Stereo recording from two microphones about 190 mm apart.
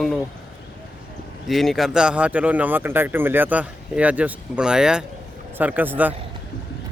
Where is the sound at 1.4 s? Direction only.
Centre (ahead or behind).